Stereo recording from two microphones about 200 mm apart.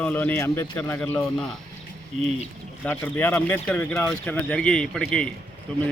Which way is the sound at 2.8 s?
10° left (ahead or behind).